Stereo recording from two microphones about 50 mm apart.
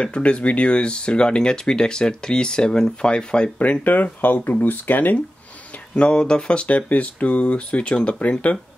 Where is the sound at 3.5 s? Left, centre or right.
Left.